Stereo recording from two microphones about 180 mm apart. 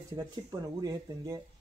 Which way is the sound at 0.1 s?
20° right (ahead or behind).